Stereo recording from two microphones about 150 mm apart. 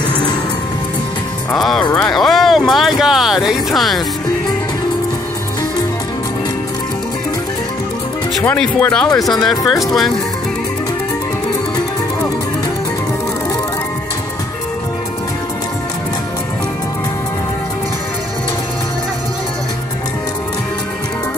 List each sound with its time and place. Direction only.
0.1 s music: 30° left (ahead or behind)
1.5 s music: 5° left (ahead or behind)
2.0 s a sound: 5° left (ahead or behind)
8.4 s speech: 5° left (ahead or behind)